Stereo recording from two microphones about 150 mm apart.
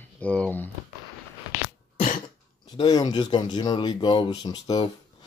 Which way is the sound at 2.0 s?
60° left (ahead or behind).